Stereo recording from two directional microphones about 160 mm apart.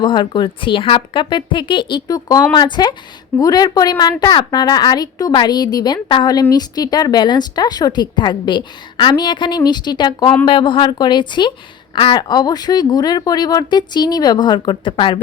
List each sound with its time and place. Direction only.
0.0 s a woman's voice: 30° left (ahead or behind)